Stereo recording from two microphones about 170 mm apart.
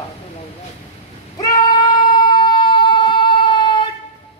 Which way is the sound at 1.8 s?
25° left (ahead or behind).